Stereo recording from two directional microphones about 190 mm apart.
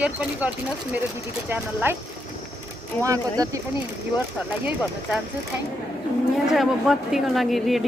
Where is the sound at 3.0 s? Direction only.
20° right (ahead or behind).